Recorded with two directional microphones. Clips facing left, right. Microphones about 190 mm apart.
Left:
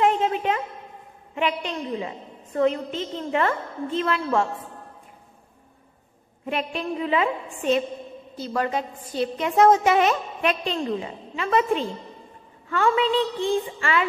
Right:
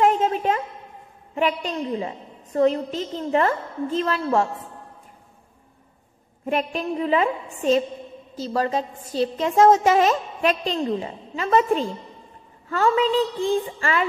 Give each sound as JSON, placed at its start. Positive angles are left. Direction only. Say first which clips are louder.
{"t": 0.0, "sound": "a sound", "louder": "right 2 dB", "side_deg": -40}
{"t": 1.3, "sound": "a woman's voice", "louder": "right 2 dB", "side_deg": -40}
{"t": 6.4, "sound": "a woman's voice", "louder": "right 3 dB", "side_deg": -40}